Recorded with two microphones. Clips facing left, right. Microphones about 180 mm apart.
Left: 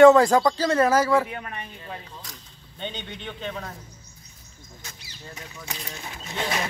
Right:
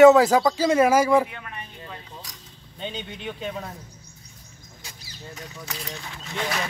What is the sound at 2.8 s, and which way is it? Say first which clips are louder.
Speech: right 1 dB; 10° right (ahead or behind).